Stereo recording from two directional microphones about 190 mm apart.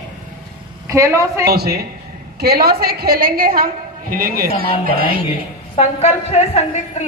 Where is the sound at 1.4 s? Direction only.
55° right (ahead or behind).